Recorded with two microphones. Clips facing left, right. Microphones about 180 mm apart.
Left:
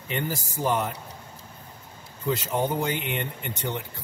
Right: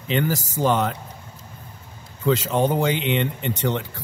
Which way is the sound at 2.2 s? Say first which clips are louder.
Right 6 dB; 90° right.